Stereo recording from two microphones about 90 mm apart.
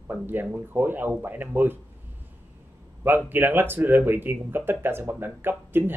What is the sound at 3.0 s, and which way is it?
Speech, 20° right (ahead or behind).